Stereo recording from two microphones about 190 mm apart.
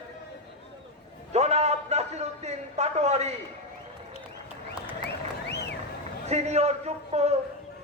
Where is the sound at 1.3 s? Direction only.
35° right (ahead or behind).